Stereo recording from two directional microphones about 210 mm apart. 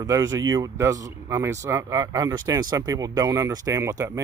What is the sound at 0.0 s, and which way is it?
Speech, 15° right (ahead or behind).